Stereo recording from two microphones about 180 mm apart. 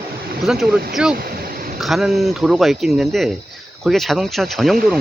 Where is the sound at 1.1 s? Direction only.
55° right (ahead or behind).